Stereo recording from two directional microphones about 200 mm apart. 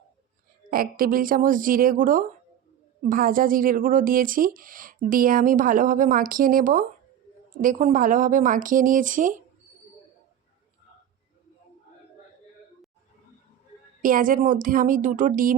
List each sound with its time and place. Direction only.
0.7 s speech: 45° right (ahead or behind)
14.0 s speech: 40° right (ahead or behind)